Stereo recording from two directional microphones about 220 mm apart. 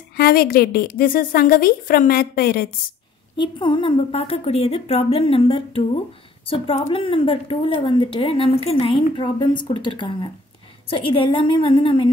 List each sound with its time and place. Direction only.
0.1 s a woman's voice: 45° left (ahead or behind)
3.3 s a woman's voice: 20° left (ahead or behind)